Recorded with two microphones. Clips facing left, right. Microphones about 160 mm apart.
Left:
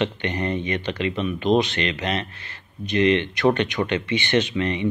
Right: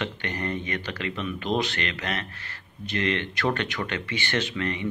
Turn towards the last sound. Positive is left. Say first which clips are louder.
# left 6 dB
turn(degrees=20)  # may be behind; listen again after turning